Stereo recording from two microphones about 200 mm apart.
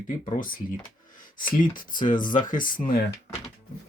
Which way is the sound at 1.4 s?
45° left (ahead or behind).